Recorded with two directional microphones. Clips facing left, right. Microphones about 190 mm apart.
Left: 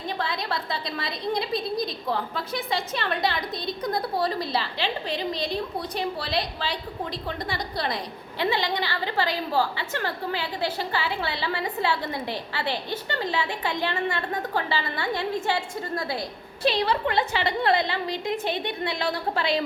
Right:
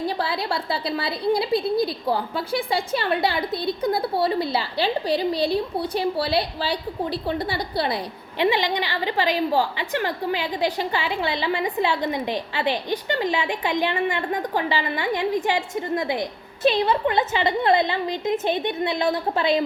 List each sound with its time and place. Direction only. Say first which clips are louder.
0.2 s a woman's voice: right 4 dB; 30° right (ahead or behind)
8.4 s a woman's voice: right 4 dB; 15° right (ahead or behind)